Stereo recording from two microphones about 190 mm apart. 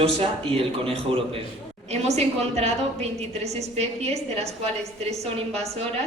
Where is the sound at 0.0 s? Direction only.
30° right (ahead or behind).